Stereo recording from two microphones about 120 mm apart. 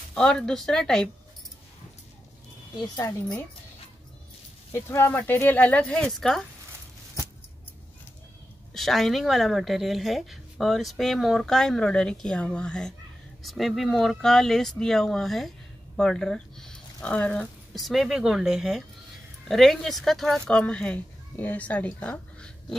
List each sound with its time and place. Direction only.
0.1 s a woman's voice: 5° left (ahead or behind)
2.7 s speech: 35° left (ahead or behind)
4.7 s speech: 20° left (ahead or behind); by 6.4 s 5° left (ahead or behind)
8.7 s a woman's voice: centre (ahead or behind)